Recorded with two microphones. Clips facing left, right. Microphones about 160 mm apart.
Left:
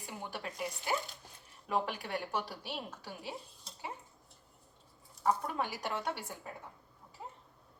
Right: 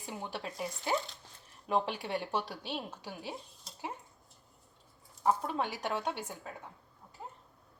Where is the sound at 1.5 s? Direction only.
Centre (ahead or behind).